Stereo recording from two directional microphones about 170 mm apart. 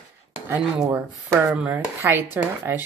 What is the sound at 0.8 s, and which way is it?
Speech, 15° right (ahead or behind).